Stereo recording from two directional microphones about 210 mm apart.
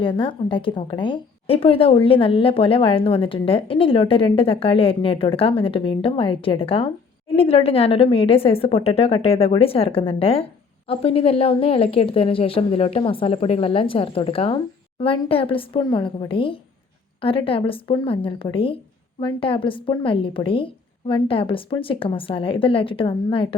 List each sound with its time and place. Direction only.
0.0 s a woman's voice: 25° left (ahead or behind)